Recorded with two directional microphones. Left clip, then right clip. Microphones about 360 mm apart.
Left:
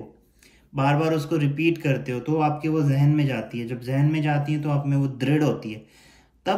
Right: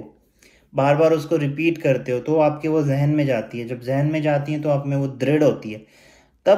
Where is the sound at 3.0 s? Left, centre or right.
Centre.